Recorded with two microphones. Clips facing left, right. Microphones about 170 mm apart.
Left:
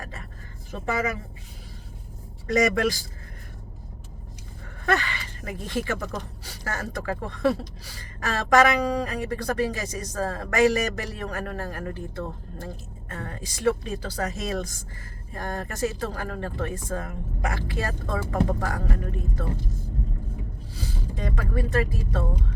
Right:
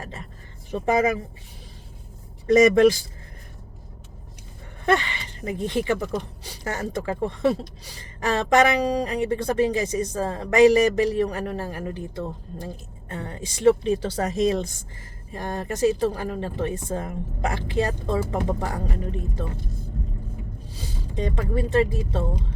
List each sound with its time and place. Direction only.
0.0 s a sound: 25° right (ahead or behind)
2.5 s a woman's voice: 25° right (ahead or behind)
4.9 s a woman's voice: 20° right (ahead or behind)
20.7 s speech: 20° right (ahead or behind)